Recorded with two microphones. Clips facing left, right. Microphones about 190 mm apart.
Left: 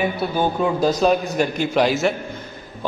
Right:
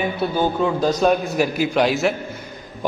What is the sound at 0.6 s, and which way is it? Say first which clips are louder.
Speech: even; 15° left (ahead or behind).